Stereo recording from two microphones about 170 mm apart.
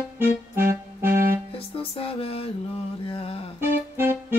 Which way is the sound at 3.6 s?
15° right (ahead or behind).